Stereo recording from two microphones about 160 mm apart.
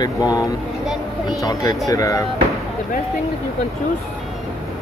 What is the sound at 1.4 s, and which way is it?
Speech, 20° left (ahead or behind).